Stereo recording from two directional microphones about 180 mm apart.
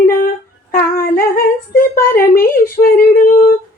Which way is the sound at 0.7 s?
55° left (ahead or behind).